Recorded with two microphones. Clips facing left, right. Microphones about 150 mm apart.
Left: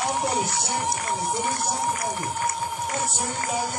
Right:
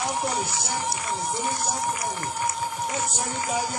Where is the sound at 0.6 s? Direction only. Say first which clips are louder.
Left 2 dB; 55° left (ahead or behind).